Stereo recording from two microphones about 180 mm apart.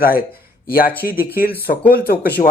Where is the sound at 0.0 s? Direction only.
55° left (ahead or behind).